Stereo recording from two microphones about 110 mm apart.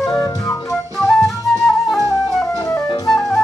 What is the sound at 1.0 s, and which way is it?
Flute, 5° left (ahead or behind).